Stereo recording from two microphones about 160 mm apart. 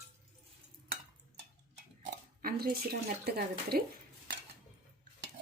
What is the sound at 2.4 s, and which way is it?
Speech, 70° right (ahead or behind).